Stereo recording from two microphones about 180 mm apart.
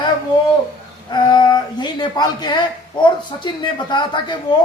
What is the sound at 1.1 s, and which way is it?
Speech, 25° left (ahead or behind).